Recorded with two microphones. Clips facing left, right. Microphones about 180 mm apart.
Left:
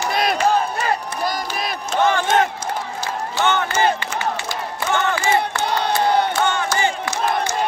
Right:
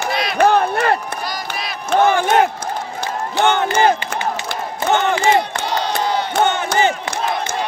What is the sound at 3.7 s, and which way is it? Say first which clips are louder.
Crowd: right 4 dB; 60° right (ahead or behind).